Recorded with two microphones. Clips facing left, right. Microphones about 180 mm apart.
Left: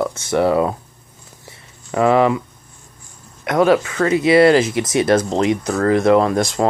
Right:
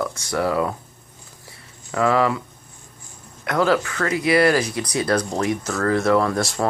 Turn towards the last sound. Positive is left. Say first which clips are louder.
# left 5 dB
turn(degrees=20)  # may be behind; listen again after turning